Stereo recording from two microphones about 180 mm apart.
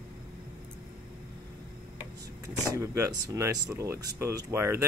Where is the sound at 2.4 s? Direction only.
15° right (ahead or behind).